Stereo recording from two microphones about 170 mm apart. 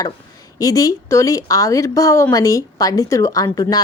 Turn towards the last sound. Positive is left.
turn(degrees=20)  # may be behind; listen again after turning